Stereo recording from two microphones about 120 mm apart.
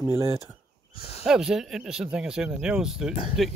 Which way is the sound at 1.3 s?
5° right (ahead or behind).